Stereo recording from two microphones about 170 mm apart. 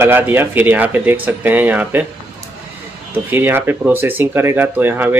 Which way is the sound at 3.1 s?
10° right (ahead or behind).